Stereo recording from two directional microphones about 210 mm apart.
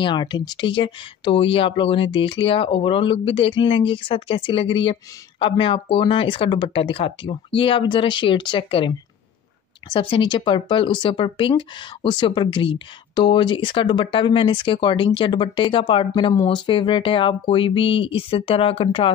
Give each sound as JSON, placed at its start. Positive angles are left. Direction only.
{"t": 0.0, "sound": "speech", "side_deg": 20}